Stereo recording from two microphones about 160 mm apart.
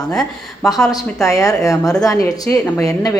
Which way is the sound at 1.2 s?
20° left (ahead or behind).